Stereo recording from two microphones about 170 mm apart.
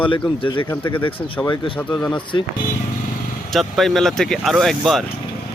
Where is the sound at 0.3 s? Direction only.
30° left (ahead or behind).